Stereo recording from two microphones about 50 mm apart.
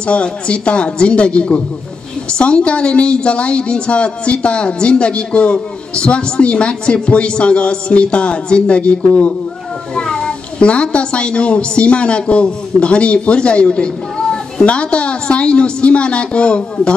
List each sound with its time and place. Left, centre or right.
0.0 s a woman's voice: left